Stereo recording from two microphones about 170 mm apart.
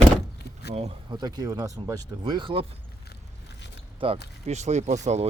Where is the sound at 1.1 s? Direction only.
25° right (ahead or behind).